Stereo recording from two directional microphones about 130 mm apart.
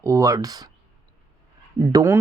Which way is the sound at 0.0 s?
25° right (ahead or behind).